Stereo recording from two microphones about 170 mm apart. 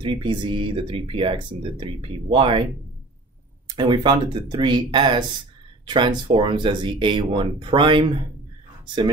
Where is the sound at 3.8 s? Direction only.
30° right (ahead or behind).